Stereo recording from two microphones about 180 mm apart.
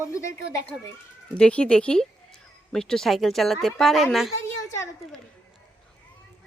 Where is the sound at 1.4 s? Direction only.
5° left (ahead or behind).